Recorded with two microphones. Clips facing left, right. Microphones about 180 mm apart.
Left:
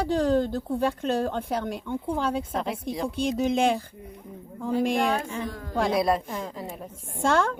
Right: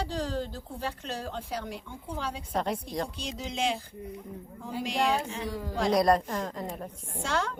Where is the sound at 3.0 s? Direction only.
55° left (ahead or behind).